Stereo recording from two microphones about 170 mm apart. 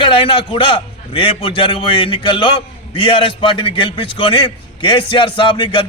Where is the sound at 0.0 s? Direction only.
30° left (ahead or behind).